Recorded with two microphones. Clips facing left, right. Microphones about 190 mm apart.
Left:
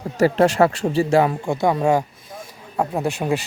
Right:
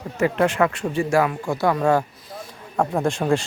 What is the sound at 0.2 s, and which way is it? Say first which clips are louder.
Speech: left 4 dB; 35° left (ahead or behind).